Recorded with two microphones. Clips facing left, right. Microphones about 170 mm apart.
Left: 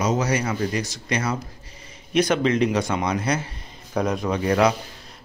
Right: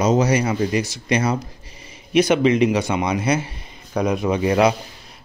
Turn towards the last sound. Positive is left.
turn(degrees=-10)  # may be behind; listen again after turning